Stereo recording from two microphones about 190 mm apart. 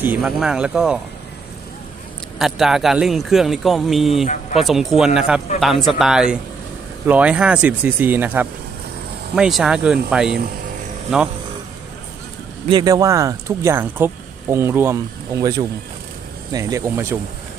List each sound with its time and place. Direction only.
0.0 s speech: 5° right (ahead or behind)
2.3 s speech: centre (ahead or behind)
12.6 s speech: 20° right (ahead or behind)